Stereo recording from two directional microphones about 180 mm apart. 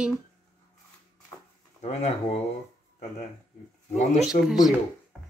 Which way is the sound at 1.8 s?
35° left (ahead or behind).